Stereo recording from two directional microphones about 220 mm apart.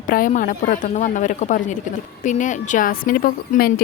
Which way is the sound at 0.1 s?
40° left (ahead or behind).